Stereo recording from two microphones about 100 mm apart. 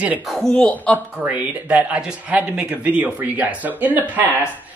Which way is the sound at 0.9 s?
15° right (ahead or behind).